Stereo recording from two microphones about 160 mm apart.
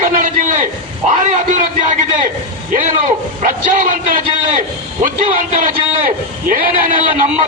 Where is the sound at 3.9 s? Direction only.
55° right (ahead or behind).